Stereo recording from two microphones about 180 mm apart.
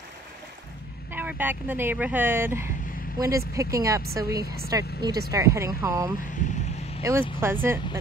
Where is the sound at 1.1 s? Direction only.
10° right (ahead or behind).